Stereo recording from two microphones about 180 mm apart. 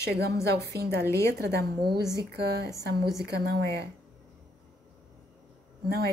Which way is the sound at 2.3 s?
65° right (ahead or behind).